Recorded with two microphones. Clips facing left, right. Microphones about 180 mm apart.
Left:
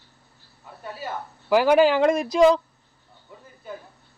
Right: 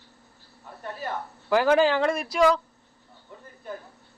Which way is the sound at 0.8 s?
5° left (ahead or behind).